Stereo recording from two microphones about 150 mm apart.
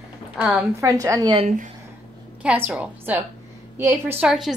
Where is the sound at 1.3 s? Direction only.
40° right (ahead or behind).